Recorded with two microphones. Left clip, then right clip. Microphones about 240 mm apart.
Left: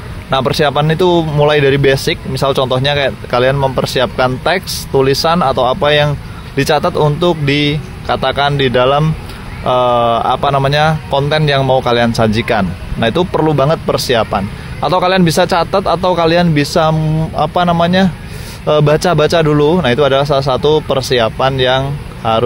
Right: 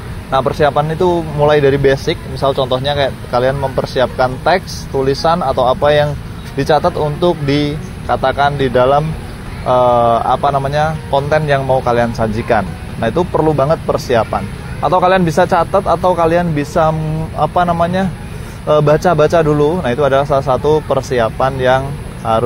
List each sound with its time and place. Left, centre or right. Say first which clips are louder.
0.3 s speech: even; left
18.7 s speech: even; left